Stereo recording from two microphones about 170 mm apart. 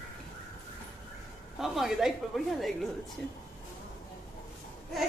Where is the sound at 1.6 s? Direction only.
Centre (ahead or behind).